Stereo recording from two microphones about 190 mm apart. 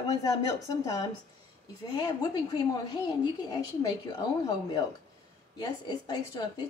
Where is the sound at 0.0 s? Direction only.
20° left (ahead or behind).